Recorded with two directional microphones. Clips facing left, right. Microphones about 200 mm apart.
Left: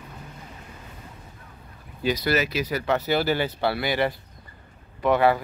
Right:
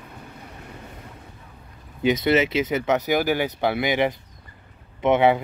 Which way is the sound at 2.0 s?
25° right (ahead or behind).